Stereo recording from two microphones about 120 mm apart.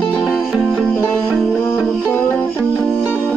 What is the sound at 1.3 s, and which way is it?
Music, centre (ahead or behind).